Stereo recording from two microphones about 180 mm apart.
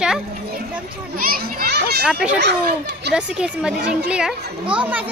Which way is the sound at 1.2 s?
55° right (ahead or behind).